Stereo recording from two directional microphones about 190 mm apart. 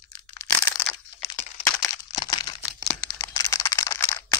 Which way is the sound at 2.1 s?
20° left (ahead or behind).